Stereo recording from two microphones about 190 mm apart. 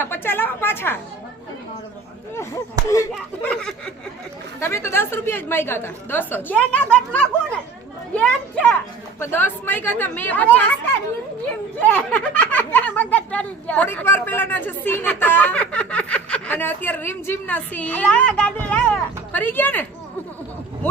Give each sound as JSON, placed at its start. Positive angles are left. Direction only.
{"t": 0.0, "sound": "speech", "side_deg": 10}
{"t": 2.9, "sound": "speech", "side_deg": 15}
{"t": 3.5, "sound": "a child's voice", "side_deg": 5}
{"t": 11.8, "sound": "speech", "side_deg": 5}